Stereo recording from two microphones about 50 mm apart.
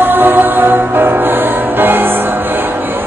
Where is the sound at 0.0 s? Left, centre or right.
Right.